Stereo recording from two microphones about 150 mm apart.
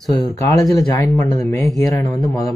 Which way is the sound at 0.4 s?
20° left (ahead or behind).